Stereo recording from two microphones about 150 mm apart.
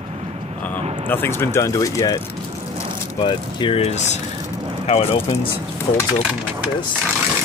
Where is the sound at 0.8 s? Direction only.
45° right (ahead or behind).